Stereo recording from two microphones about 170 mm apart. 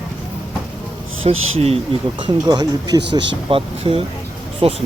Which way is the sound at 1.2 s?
35° right (ahead or behind).